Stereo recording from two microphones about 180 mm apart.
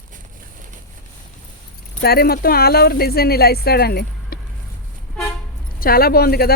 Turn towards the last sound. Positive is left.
turn(degrees=60)  # may be behind; listen again after turning